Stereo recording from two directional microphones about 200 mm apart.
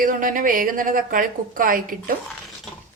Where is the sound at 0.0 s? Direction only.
45° right (ahead or behind).